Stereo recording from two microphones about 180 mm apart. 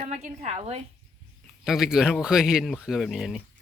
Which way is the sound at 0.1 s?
35° right (ahead or behind).